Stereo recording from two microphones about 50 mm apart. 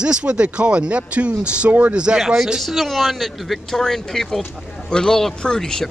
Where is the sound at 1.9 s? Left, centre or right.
Centre.